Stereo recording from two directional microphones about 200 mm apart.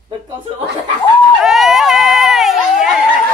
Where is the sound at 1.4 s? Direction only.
Centre (ahead or behind).